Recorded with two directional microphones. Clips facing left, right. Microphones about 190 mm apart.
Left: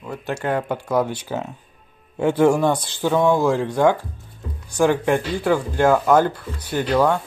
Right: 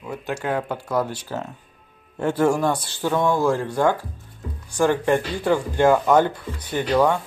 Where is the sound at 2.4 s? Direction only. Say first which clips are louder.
Left 3 dB; 20° left (ahead or behind).